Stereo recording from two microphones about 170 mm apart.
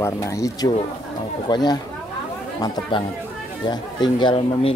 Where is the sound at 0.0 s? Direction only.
20° left (ahead or behind).